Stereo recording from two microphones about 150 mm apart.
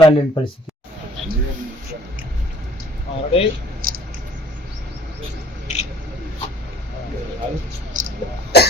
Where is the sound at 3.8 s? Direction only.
70° right (ahead or behind).